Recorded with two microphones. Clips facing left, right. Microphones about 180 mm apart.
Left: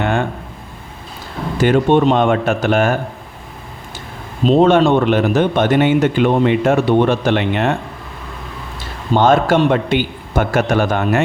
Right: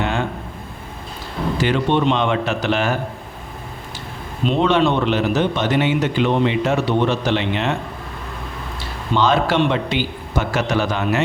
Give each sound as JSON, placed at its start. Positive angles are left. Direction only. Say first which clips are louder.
{"t": 0.0, "sound": "a sound", "louder": "left 4 dB", "side_deg": 55}
{"t": 1.6, "sound": "speech", "louder": "left 6 dB", "side_deg": 50}
{"t": 4.4, "sound": "speech", "louder": "left 6 dB", "side_deg": 40}
{"t": 9.1, "sound": "speech", "louder": "left 5 dB", "side_deg": 50}